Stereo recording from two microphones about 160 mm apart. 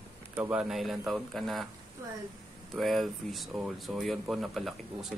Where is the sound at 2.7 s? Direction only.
Centre (ahead or behind).